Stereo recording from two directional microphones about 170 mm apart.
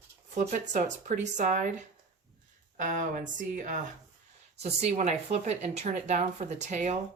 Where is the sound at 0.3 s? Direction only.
45° right (ahead or behind).